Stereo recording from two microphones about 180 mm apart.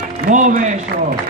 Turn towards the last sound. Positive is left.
turn(degrees=-40)  # may be behind; listen again after turning